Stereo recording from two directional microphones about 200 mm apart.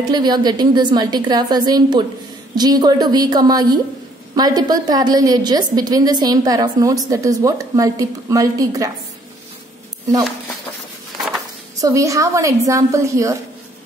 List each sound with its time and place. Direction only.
0.1 s a woman's voice: 20° right (ahead or behind)
11.8 s a woman's voice: 15° right (ahead or behind)